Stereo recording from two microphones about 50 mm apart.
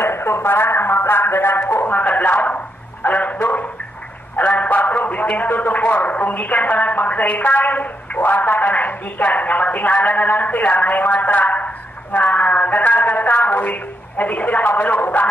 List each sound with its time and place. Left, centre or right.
0.0 s a man's voice: left
5.2 s speech: left